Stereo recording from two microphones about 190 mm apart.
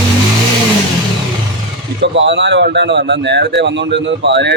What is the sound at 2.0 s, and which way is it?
A man's voice, 70° right (ahead or behind).